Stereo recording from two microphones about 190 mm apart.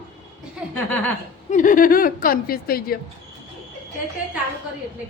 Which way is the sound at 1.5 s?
45° left (ahead or behind).